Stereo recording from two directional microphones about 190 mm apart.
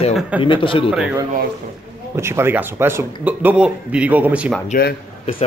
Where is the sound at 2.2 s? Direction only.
15° right (ahead or behind).